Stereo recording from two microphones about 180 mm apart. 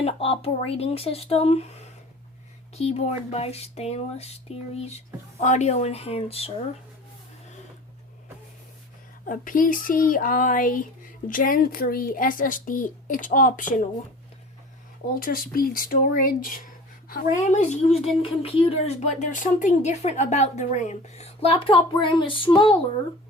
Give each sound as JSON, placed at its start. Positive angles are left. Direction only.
{"t": 0.0, "sound": "speech", "side_deg": 35}
{"t": 9.2, "sound": "a child's voice", "side_deg": 50}
{"t": 15.2, "sound": "a child's voice", "side_deg": 55}
{"t": 17.7, "sound": "speech", "side_deg": 35}